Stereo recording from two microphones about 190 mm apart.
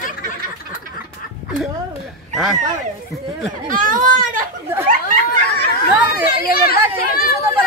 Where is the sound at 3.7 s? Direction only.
45° right (ahead or behind).